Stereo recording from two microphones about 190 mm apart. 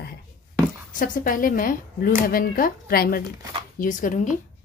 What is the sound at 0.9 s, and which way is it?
A woman's voice, 45° left (ahead or behind).